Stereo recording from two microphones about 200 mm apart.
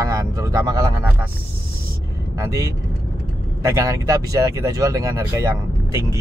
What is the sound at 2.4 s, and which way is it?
Speech, 15° right (ahead or behind).